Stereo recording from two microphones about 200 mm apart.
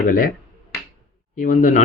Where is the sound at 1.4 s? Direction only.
40° left (ahead or behind).